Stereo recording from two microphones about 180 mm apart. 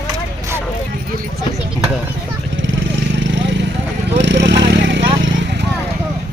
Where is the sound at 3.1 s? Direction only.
85° right.